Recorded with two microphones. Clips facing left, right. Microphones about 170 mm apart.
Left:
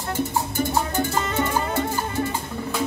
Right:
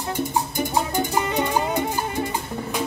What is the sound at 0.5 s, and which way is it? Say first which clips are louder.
Music: even; 15° right (ahead or behind).